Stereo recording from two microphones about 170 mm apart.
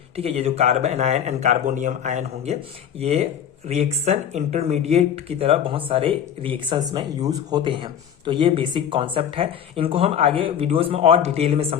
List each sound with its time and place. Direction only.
0.2 s speech: 35° right (ahead or behind)